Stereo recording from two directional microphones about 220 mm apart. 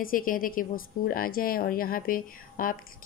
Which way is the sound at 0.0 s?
40° left (ahead or behind).